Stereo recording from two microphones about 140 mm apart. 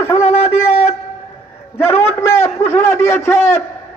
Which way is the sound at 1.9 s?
20° left (ahead or behind).